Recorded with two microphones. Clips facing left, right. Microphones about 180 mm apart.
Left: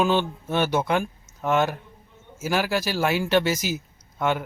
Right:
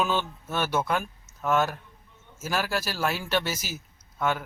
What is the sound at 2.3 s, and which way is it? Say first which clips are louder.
Speech: left 5 dB; 10° left (ahead or behind).